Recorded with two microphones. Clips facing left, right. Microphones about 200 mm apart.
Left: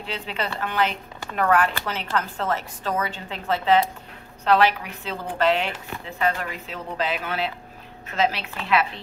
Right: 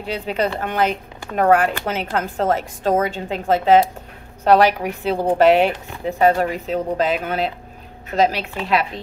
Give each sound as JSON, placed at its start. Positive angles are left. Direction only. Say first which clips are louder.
{"t": 0.0, "sound": "a woman's voice", "louder": "right 8 dB", "side_deg": -45}